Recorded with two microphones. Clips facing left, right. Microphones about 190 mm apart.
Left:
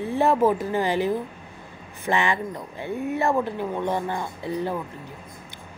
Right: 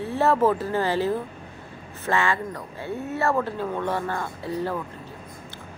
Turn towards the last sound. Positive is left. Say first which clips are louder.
# left 1 dB
turn(degrees=15)  # may be behind; listen again after turning